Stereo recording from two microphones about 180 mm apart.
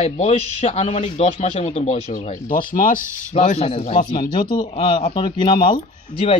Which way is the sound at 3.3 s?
35° left (ahead or behind).